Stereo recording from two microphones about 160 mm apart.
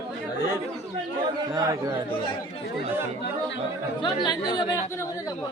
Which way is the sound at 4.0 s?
30° left (ahead or behind).